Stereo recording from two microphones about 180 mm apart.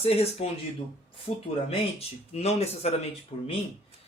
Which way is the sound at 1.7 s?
35° left (ahead or behind).